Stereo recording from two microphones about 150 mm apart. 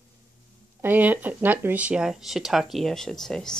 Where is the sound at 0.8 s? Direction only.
10° right (ahead or behind).